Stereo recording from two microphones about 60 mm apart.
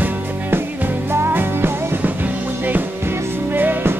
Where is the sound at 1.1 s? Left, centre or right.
Right.